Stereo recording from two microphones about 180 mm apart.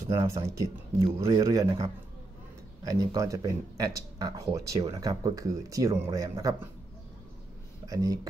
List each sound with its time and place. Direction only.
0.0 s speech: 15° right (ahead or behind)
2.8 s speech: 20° right (ahead or behind)
7.8 s speech: 20° right (ahead or behind)